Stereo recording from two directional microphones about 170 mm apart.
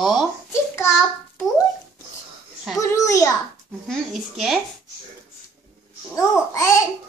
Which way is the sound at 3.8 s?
Centre (ahead or behind).